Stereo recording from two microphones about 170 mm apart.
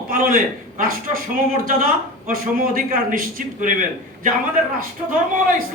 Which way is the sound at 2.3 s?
55° right (ahead or behind).